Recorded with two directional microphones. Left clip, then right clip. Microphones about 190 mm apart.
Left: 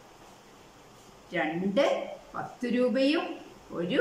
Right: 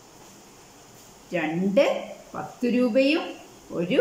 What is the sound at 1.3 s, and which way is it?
A woman's voice, 5° right (ahead or behind).